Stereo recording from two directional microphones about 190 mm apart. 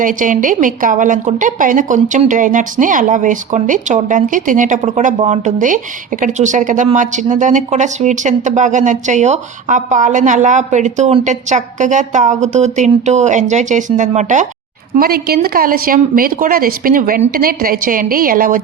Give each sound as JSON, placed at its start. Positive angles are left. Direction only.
{"t": 0.0, "sound": "a woman's voice", "side_deg": -45}
{"t": 14.9, "sound": "a woman's voice", "side_deg": -50}